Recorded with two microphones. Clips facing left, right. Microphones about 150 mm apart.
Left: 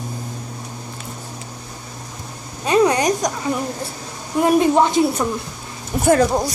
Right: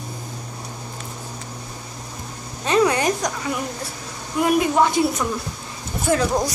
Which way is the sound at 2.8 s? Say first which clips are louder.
Left 3 dB; 20° left (ahead or behind).